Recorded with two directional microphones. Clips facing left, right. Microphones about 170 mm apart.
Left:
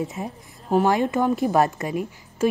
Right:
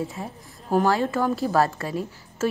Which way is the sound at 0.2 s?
15° left (ahead or behind).